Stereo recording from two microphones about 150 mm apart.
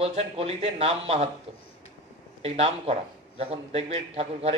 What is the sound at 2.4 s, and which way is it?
A man's voice, 40° right (ahead or behind).